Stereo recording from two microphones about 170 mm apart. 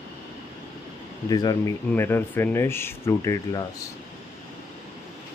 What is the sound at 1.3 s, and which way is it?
Speech, 20° left (ahead or behind).